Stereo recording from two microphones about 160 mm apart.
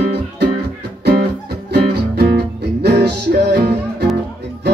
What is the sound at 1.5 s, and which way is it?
Music, 90° right.